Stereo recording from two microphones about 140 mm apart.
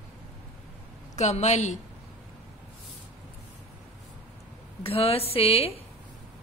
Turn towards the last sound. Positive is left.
turn(degrees=45)  # may be behind; listen again after turning